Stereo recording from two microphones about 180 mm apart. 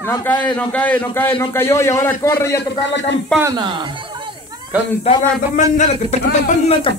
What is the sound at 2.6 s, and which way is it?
Speech, 75° left (ahead or behind).